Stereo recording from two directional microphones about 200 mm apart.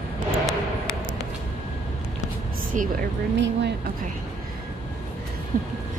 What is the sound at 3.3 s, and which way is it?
Speech, 65° right (ahead or behind).